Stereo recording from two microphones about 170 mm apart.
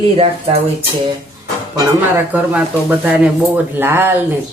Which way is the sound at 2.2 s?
10° right (ahead or behind).